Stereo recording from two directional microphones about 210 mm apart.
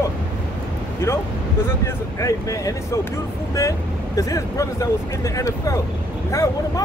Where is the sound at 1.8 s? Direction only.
15° left (ahead or behind).